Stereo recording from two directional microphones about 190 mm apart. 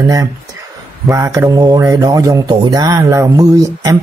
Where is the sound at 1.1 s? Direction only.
15° right (ahead or behind).